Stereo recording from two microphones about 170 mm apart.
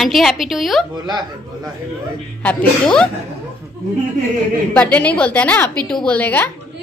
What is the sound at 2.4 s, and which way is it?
Speech, 5° left (ahead or behind).